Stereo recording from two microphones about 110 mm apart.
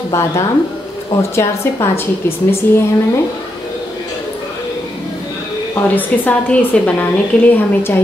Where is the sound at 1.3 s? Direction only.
25° left (ahead or behind).